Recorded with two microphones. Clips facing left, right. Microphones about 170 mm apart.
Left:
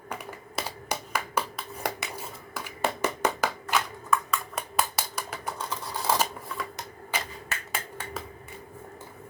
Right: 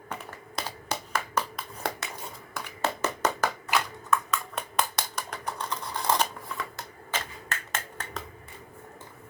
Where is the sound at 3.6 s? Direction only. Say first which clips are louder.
Even; 5° left (ahead or behind).